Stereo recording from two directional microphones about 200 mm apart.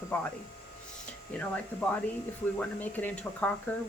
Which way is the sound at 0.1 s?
5° left (ahead or behind).